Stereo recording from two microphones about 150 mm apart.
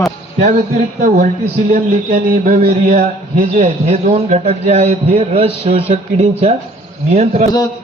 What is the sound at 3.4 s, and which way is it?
A man's voice, 45° right (ahead or behind).